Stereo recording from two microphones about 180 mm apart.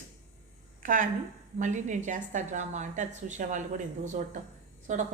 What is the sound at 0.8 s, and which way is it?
A woman's voice, 45° right (ahead or behind).